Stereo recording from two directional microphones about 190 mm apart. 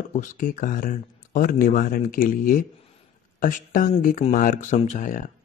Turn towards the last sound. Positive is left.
turn(degrees=45)  # may be behind; listen again after turning